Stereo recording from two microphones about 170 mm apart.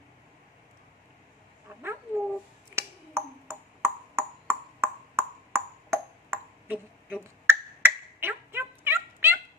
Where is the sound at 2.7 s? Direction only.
15° right (ahead or behind).